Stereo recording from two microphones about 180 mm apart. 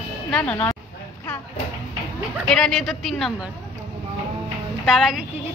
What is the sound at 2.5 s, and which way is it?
Speech, centre (ahead or behind).